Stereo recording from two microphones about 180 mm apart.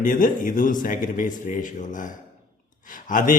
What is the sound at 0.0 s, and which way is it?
A man's voice, 50° left (ahead or behind).